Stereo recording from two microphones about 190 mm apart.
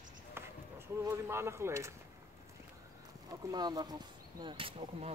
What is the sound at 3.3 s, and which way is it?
Speech, 20° right (ahead or behind).